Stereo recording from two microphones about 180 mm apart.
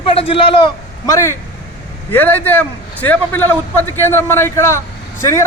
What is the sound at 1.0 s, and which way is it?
Speech, 15° left (ahead or behind).